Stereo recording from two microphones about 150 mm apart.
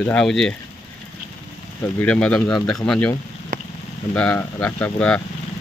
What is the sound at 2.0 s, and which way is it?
Speech, 10° left (ahead or behind).